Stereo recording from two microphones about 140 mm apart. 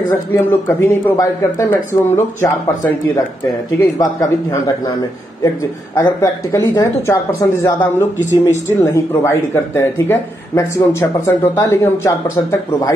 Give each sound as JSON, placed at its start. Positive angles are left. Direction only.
{"t": 0.4, "sound": "a man's voice", "side_deg": 15}
{"t": 4.2, "sound": "speech", "side_deg": 25}